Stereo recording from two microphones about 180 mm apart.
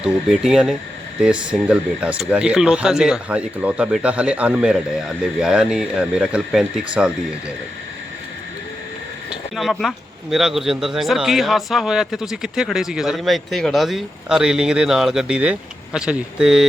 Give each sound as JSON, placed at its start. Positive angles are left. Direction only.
{"t": 0.0, "sound": "speech", "side_deg": -5}
{"t": 9.6, "sound": "speech", "side_deg": 0}